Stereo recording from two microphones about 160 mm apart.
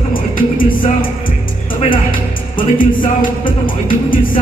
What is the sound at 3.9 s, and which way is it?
Music, 60° left (ahead or behind).